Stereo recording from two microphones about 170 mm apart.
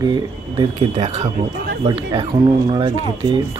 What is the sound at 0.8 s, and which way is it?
Speech, 40° right (ahead or behind).